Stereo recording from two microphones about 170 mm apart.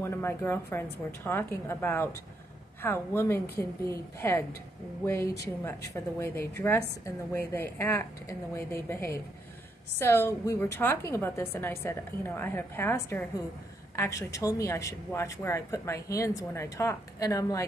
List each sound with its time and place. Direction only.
0.0 s a woman's voice: 15° left (ahead or behind)